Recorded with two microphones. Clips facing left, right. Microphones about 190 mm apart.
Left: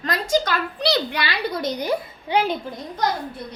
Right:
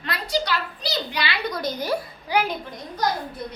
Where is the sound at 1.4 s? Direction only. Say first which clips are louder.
Left 2 dB; 25° left (ahead or behind).